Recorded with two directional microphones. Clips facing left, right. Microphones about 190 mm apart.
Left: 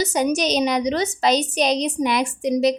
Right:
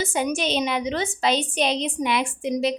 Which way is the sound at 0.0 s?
40° left (ahead or behind).